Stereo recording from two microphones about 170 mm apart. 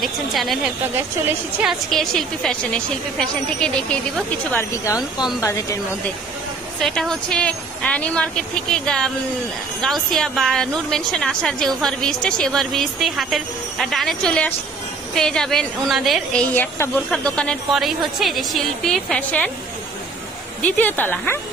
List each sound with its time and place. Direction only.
0.0 s a woman's voice: centre (ahead or behind)
0.9 s a woman's voice: 10° right (ahead or behind)
1.7 s a woman's voice: centre (ahead or behind)
4.5 s speech: 15° left (ahead or behind)
6.8 s a woman's voice: 5° left (ahead or behind)
16.4 s a woman's voice: 15° left (ahead or behind)
20.7 s speech: 10° left (ahead or behind)